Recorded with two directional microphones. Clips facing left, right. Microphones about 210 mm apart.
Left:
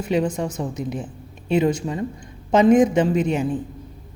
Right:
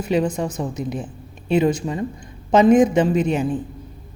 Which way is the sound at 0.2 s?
20° right (ahead or behind).